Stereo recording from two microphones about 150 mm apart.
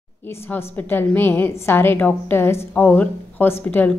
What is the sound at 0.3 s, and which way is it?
A woman's voice, 15° left (ahead or behind).